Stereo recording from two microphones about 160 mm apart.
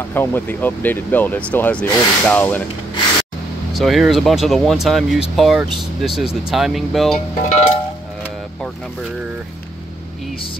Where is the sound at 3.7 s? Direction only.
Centre (ahead or behind).